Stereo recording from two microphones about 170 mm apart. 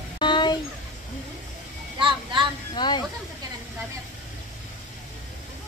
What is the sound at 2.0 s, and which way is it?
Speech, 30° right (ahead or behind).